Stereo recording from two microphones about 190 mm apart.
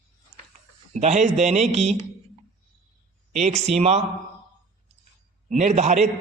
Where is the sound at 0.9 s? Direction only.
35° right (ahead or behind).